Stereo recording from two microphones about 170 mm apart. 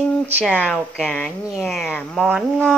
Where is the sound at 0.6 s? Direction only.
Centre (ahead or behind).